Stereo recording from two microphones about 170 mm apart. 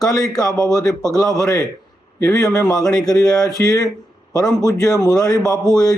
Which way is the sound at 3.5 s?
20° left (ahead or behind).